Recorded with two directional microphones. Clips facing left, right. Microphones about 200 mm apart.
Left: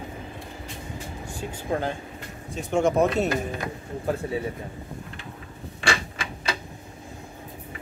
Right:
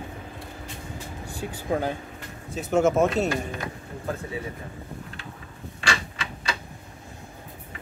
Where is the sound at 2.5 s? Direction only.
5° right (ahead or behind).